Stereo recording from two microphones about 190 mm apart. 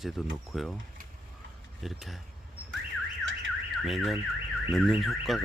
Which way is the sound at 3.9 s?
Centre (ahead or behind).